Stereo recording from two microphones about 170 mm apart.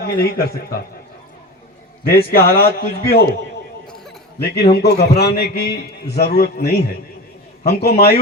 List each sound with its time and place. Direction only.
0.0 s a man's voice: 60° left (ahead or behind)
2.0 s a man's voice: 65° left (ahead or behind)
3.8 s a sound: 5° left (ahead or behind)
4.7 s a man's voice: 70° left (ahead or behind)